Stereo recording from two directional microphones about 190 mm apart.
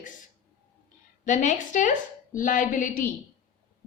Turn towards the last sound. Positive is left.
turn(degrees=45)  # may be behind; listen again after turning